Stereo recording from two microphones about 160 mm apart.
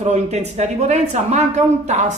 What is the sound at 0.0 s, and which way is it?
Speech, 45° right (ahead or behind).